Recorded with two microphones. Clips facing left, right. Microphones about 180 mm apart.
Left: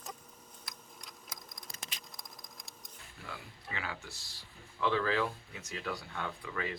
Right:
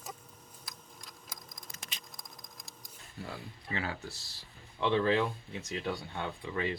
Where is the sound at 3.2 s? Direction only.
35° right (ahead or behind).